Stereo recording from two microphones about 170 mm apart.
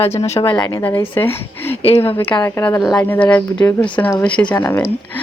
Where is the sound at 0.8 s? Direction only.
10° left (ahead or behind).